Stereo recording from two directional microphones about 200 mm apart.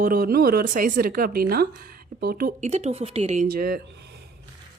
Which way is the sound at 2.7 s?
35° right (ahead or behind).